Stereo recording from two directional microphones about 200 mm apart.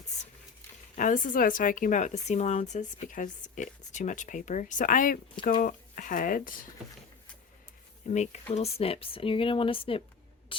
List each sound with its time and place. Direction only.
0.1 s patter: 35° left (ahead or behind)
0.9 s a woman's voice: 40° left (ahead or behind)
8.0 s a woman's voice: 35° left (ahead or behind)